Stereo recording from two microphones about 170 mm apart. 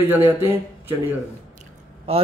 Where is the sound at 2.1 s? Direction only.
35° right (ahead or behind).